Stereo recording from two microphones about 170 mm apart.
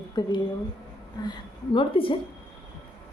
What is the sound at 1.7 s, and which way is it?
Speech, 30° left (ahead or behind).